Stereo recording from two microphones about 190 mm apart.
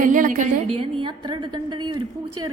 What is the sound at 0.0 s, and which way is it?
A woman's voice, 45° right (ahead or behind).